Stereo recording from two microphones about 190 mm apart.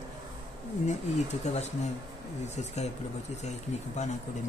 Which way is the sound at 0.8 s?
35° left (ahead or behind).